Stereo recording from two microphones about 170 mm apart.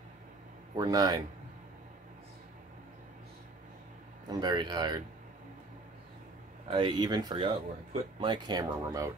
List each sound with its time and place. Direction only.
0.7 s speech: 25° right (ahead or behind)
4.3 s speech: 25° right (ahead or behind)
6.7 s speech: 30° right (ahead or behind)